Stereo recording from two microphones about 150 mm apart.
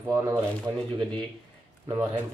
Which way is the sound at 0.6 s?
5° left (ahead or behind).